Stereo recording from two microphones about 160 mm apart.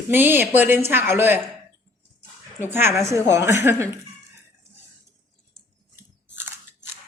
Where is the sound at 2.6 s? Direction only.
15° right (ahead or behind).